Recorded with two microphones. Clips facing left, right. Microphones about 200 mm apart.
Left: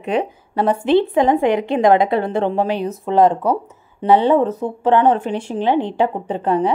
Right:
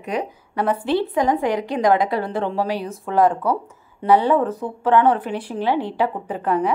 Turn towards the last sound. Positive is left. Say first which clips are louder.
# left 3 dB
turn(degrees=30)  # may be behind; listen again after turning